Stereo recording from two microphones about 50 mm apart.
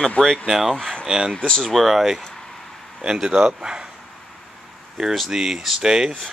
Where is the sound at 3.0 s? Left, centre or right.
Centre.